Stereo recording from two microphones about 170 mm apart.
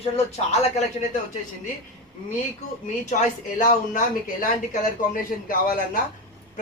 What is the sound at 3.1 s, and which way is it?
A man's voice, 50° left (ahead or behind).